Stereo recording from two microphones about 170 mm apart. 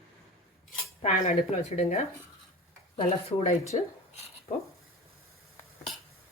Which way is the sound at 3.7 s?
40° left (ahead or behind).